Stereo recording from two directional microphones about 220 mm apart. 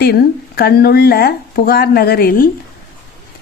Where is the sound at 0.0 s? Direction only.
45° left (ahead or behind).